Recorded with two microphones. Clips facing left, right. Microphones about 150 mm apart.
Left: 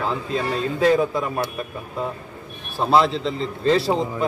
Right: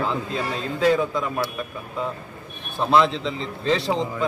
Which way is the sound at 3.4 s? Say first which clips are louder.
Left 5 dB; centre (ahead or behind).